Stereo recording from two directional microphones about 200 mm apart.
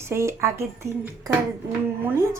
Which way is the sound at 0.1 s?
15° right (ahead or behind).